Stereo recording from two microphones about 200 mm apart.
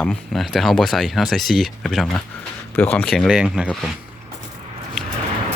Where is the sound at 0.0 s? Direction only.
Centre (ahead or behind).